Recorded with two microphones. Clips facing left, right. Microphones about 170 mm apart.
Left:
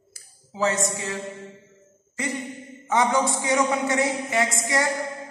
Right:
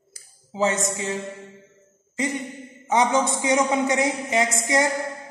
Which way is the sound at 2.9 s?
20° right (ahead or behind).